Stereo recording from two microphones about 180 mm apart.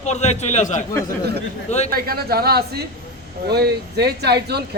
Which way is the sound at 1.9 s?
55° right (ahead or behind).